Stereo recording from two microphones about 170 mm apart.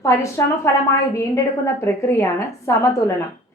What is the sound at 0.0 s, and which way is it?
A woman's voice, 15° left (ahead or behind).